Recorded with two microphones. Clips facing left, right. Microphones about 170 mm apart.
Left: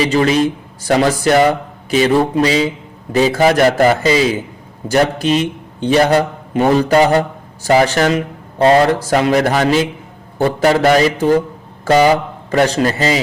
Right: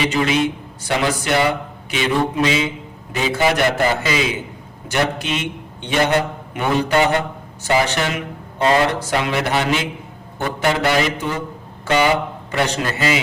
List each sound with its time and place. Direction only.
0.0 s a man's voice: 35° left (ahead or behind)